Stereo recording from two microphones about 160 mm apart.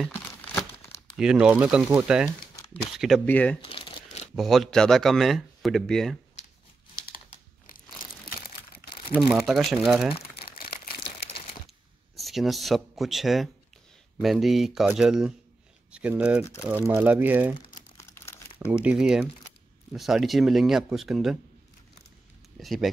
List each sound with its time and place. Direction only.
1.1 s speech: 5° right (ahead or behind)
3.6 s crumpling: 35° left (ahead or behind)
4.4 s speech: centre (ahead or behind)
9.1 s speech: 5° right (ahead or behind)
10.5 s crumpling: 70° left (ahead or behind)
12.2 s speech: centre (ahead or behind)
17.9 s crumpling: 15° left (ahead or behind)
18.7 s speech: 5° right (ahead or behind)
22.6 s speech: centre (ahead or behind)